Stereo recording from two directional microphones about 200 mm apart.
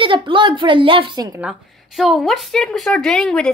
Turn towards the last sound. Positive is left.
turn(degrees=5)  # may be behind; listen again after turning